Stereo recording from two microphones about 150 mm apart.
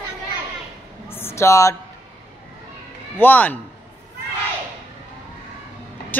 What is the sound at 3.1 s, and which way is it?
Speech, 10° left (ahead or behind).